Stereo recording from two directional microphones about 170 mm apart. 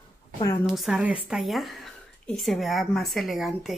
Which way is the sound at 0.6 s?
Centre (ahead or behind).